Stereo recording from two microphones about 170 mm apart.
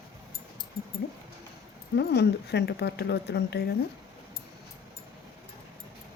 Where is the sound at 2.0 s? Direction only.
80° left.